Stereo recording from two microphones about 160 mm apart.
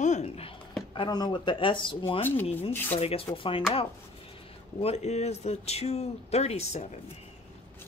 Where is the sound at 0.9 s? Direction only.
25° left (ahead or behind).